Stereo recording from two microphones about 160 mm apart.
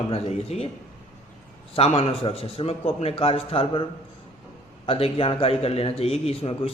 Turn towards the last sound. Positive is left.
turn(degrees=35)  # may be behind; listen again after turning